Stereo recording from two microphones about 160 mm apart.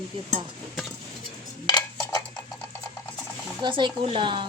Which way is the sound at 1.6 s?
25° left (ahead or behind).